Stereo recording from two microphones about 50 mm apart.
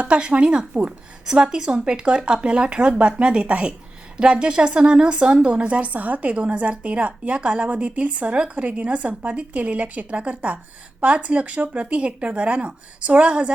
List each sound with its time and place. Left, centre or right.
0.0 s speech: right